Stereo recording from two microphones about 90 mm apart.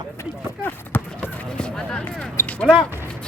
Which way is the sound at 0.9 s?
25° left (ahead or behind).